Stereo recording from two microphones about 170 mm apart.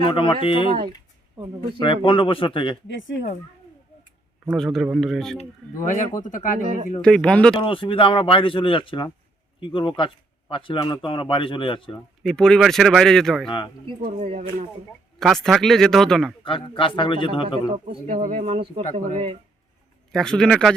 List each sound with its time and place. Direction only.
0.0 s speech: 30° left (ahead or behind)
1.8 s speech: 30° left (ahead or behind)
2.8 s speech: 90° left
4.5 s speech: centre (ahead or behind)
5.4 s speech: 45° left (ahead or behind)
7.0 s speech: 5° left (ahead or behind)
7.5 s speech: 30° left (ahead or behind)
11.9 s speech: 5° left (ahead or behind)
14.2 s speech: 40° right (ahead or behind)
15.2 s speech: centre (ahead or behind)
16.4 s speech: 30° left (ahead or behind)
17.7 s speech: 45° right (ahead or behind)
20.1 s speech: 5° left (ahead or behind)